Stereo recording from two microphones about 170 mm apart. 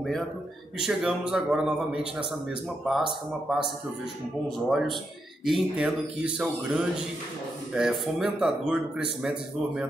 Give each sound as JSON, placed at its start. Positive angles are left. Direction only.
{"t": 0.7, "sound": "a man's voice", "side_deg": -5}
{"t": 4.6, "sound": "a man's voice", "side_deg": 0}